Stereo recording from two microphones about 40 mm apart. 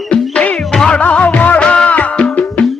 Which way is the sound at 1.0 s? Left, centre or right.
Left.